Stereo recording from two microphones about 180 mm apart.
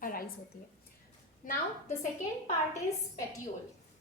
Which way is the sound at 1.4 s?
50° left (ahead or behind).